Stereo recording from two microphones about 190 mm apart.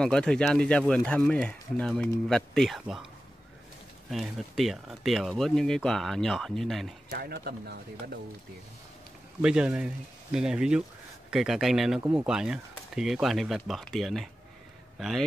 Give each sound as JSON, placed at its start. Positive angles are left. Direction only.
{"t": 0.0, "sound": "speech", "side_deg": 5}
{"t": 4.1, "sound": "speech", "side_deg": 0}
{"t": 7.1, "sound": "speech", "side_deg": -55}
{"t": 9.4, "sound": "speech", "side_deg": -5}